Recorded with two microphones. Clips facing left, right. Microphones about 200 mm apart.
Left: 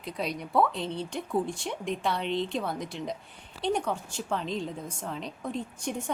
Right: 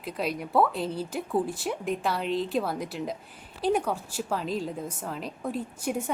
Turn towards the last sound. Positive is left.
turn(degrees=-5)  # may be behind; listen again after turning